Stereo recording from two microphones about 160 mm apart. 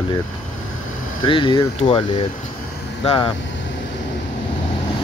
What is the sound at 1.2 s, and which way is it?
Speech, 30° left (ahead or behind).